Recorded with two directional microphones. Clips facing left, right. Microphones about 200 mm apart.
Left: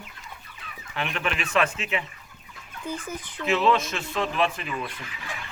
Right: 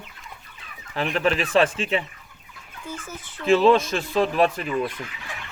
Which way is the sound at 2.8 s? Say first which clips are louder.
Left 3 dB; 15° left (ahead or behind).